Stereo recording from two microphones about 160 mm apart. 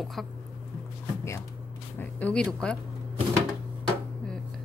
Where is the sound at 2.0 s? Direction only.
10° left (ahead or behind).